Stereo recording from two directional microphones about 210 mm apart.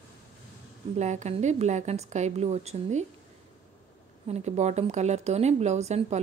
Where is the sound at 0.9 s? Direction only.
35° right (ahead or behind).